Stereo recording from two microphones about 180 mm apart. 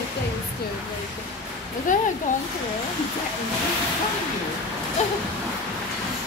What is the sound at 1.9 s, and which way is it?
Speech, 45° left (ahead or behind).